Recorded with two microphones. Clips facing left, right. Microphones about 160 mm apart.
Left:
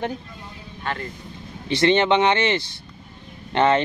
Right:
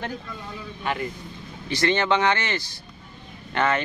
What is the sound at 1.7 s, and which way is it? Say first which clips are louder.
Speech: left 4 dB; 25° left (ahead or behind).